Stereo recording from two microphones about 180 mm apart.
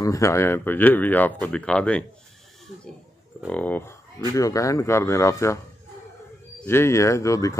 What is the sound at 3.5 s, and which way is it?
Speech, 10° left (ahead or behind).